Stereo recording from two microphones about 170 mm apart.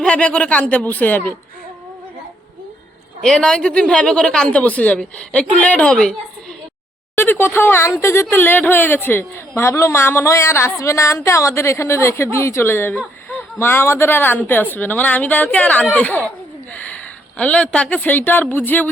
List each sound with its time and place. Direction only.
0.0 s speech: 5° left (ahead or behind)
3.2 s a woman's voice: 5° left (ahead or behind)
7.2 s speech: 10° left (ahead or behind)